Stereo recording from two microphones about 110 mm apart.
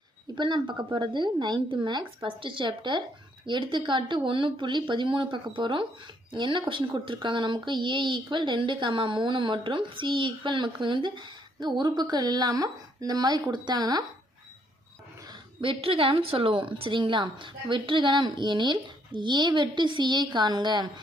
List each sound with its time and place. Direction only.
0.3 s speech: 45° right (ahead or behind)
15.6 s speech: 55° right (ahead or behind)